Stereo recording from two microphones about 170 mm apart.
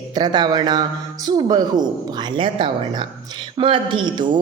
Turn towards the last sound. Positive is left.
turn(degrees=-25)  # may be behind; listen again after turning